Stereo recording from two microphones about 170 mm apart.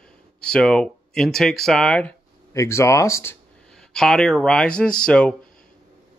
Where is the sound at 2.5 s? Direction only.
15° left (ahead or behind).